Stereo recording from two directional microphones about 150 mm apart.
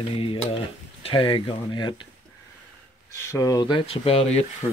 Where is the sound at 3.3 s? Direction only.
25° left (ahead or behind).